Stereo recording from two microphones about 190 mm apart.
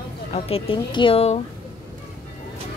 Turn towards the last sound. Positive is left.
turn(degrees=30)  # may be behind; listen again after turning